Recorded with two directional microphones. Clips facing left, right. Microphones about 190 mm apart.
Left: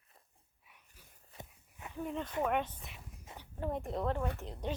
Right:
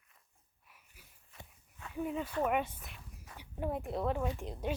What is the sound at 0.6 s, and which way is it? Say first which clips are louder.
Wheeze: even; centre (ahead or behind).